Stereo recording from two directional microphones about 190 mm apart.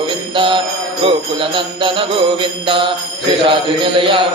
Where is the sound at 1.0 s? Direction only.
25° right (ahead or behind).